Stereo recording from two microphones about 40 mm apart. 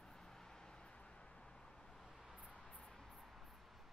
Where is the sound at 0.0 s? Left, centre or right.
Centre.